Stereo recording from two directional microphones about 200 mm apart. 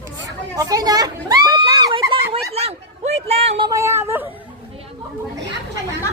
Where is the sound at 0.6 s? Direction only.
20° right (ahead or behind).